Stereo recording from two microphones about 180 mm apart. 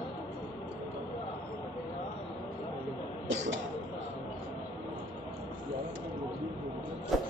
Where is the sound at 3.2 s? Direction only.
90° right.